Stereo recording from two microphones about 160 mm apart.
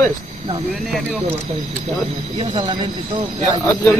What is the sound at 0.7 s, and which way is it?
Speech, centre (ahead or behind).